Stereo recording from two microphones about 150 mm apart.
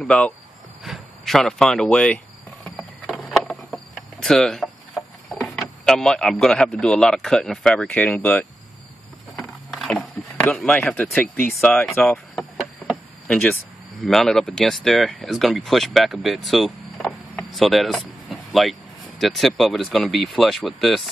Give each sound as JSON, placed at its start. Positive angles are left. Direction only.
{"t": 0.0, "sound": "speech", "side_deg": 5}
{"t": 2.6, "sound": "insect", "side_deg": 5}
{"t": 6.4, "sound": "speech", "side_deg": 5}
{"t": 9.3, "sound": "a sound", "side_deg": 0}
{"t": 14.0, "sound": "speech", "side_deg": 5}